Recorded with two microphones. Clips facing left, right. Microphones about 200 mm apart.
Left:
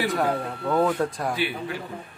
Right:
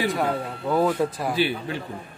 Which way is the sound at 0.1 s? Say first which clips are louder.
Even; centre (ahead or behind).